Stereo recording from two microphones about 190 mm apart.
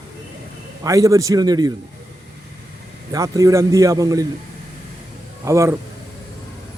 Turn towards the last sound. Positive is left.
turn(degrees=-15)  # may be behind; listen again after turning